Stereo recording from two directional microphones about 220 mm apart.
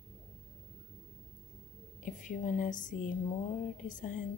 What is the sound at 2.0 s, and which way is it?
Speech, 35° left (ahead or behind).